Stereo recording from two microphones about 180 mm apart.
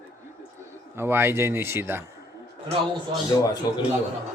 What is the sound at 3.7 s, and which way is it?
Speech, 20° left (ahead or behind).